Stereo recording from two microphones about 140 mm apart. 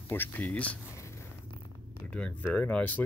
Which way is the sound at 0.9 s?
20° left (ahead or behind).